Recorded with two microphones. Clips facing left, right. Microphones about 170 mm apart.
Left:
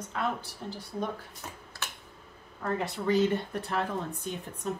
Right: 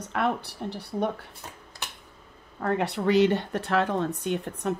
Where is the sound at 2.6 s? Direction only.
70° right (ahead or behind).